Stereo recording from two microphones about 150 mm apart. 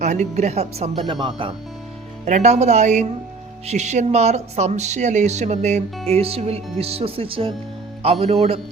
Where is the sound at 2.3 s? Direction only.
50° right (ahead or behind).